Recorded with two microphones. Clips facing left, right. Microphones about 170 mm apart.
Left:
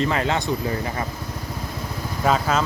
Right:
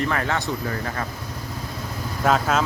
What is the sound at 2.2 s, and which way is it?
Speech, centre (ahead or behind).